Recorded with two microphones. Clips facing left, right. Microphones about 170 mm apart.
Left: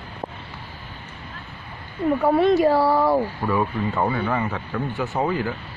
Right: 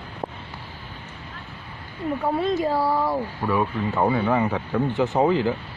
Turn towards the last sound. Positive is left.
turn(degrees=-20)  # may be behind; listen again after turning